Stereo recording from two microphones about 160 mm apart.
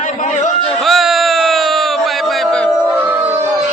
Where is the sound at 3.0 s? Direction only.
10° right (ahead or behind).